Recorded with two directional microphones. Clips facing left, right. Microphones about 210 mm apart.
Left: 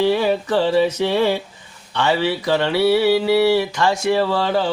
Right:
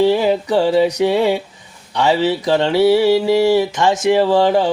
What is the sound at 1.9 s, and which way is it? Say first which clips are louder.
Music: right 4 dB; 20° right (ahead or behind).